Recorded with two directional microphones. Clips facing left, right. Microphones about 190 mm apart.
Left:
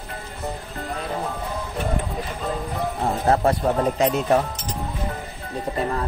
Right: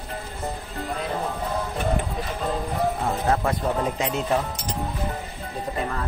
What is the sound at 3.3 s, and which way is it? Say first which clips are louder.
Speech: left 5 dB; 35° left (ahead or behind).